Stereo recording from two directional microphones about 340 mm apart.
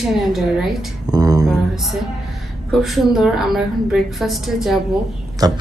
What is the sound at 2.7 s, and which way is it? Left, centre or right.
Speech, centre.